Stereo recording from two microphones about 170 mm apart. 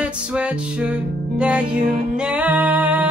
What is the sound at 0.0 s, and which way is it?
Music, 5° right (ahead or behind).